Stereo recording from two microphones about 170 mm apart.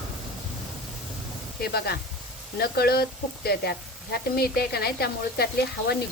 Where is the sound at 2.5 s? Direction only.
65° left (ahead or behind).